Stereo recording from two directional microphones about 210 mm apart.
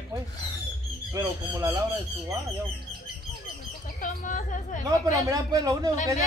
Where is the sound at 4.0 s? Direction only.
35° left (ahead or behind).